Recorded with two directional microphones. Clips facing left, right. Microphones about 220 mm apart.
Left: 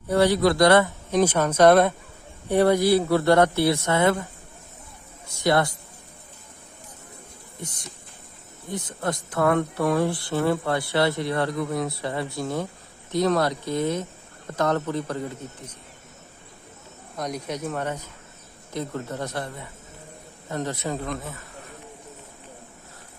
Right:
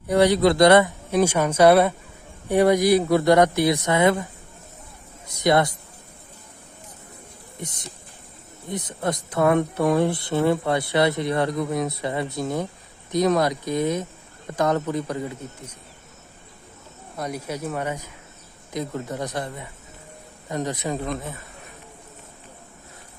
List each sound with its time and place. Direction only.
0.1 s speech: 20° right (ahead or behind)
1.1 s speech: 10° right (ahead or behind)
5.3 s a man's voice: 20° right (ahead or behind)
7.6 s speech: 20° right (ahead or behind)
17.2 s speech: 5° right (ahead or behind)
20.5 s speech: 15° right (ahead or behind)